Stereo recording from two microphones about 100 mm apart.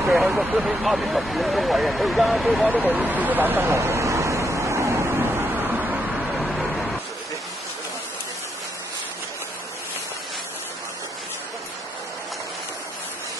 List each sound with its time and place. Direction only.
0.0 s speech: 5° right (ahead or behind)
2.7 s speech: 10° right (ahead or behind); by 4.9 s 30° right (ahead or behind)
5.6 s a sound: 10° right (ahead or behind)